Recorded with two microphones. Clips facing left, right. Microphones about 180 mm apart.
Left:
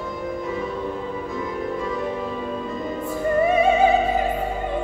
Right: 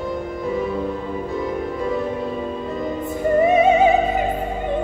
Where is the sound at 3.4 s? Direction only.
20° right (ahead or behind).